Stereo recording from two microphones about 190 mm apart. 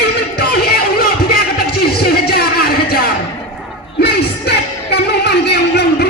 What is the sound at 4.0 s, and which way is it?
Music, 60° left (ahead or behind).